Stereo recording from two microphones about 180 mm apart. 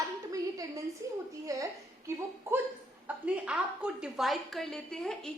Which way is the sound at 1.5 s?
20° right (ahead or behind).